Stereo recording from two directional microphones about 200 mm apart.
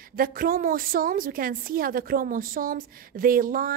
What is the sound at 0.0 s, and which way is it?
A woman's voice, 45° right (ahead or behind).